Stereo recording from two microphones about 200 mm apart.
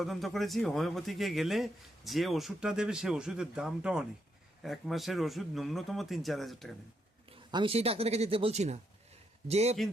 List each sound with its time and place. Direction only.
0.0 s a man's voice: centre (ahead or behind)
7.3 s a man's voice: 25° right (ahead or behind)